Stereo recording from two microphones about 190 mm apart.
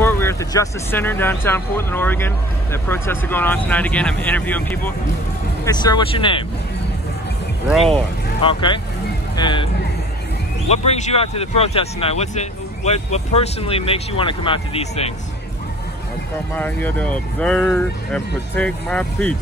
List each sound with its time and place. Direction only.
0.0 s speech: 15° left (ahead or behind)
5.7 s speech: 20° left (ahead or behind)
7.7 s speech: centre (ahead or behind)
8.4 s speech: 25° left (ahead or behind)
10.7 s speech: 35° left (ahead or behind)
16.5 s speech: 10° left (ahead or behind)